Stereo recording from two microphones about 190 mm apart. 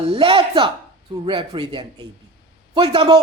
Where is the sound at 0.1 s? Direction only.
25° right (ahead or behind).